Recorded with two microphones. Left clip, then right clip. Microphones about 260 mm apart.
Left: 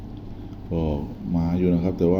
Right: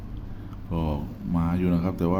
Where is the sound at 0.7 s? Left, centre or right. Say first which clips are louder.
Left 4 dB; centre.